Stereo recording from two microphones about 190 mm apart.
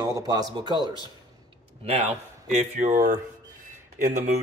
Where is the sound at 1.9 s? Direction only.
35° right (ahead or behind).